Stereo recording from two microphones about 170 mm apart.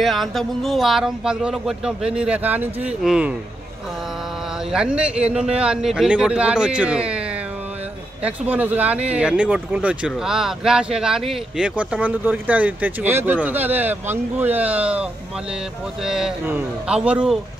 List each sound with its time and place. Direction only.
0.0 s speech: centre (ahead or behind)
4.7 s speech: 5° right (ahead or behind)
8.2 s speech: 10° right (ahead or behind)